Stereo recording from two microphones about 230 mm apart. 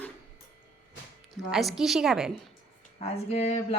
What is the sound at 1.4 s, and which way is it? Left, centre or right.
A woman's voice, centre.